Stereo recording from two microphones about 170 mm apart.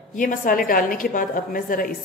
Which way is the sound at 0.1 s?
50° left (ahead or behind).